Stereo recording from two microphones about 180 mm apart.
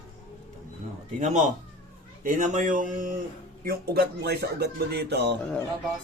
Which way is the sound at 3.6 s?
60° right (ahead or behind).